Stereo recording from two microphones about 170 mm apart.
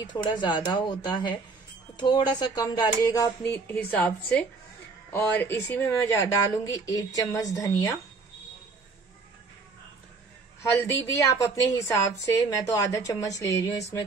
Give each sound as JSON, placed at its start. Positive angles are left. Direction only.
{"t": 0.0, "sound": "a woman's voice", "side_deg": 25}
{"t": 10.6, "sound": "a woman's voice", "side_deg": 15}